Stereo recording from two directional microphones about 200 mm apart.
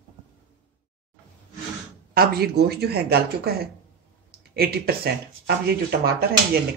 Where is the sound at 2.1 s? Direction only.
50° right (ahead or behind).